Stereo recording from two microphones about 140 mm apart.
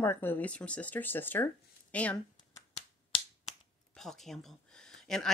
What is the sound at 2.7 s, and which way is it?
Finger snapping, 45° left (ahead or behind).